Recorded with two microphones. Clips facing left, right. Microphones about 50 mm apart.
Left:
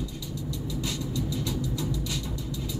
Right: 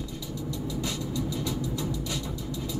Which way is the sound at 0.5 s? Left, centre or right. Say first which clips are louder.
Right 1 dB; centre.